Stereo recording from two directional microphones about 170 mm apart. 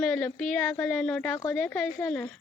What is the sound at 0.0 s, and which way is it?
Speech, 5° left (ahead or behind).